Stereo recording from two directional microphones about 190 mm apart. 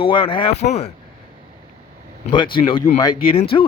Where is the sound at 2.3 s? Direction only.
25° left (ahead or behind).